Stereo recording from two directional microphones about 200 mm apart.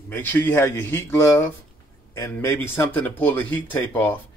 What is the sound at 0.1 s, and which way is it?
Speech, 10° left (ahead or behind).